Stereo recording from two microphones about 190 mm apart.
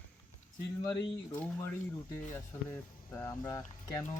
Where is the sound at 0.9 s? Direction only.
15° left (ahead or behind).